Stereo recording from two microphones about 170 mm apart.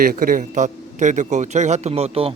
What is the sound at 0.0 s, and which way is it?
A man's voice, 55° right (ahead or behind).